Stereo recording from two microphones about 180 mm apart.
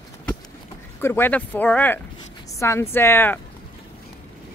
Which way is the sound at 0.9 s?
10° left (ahead or behind).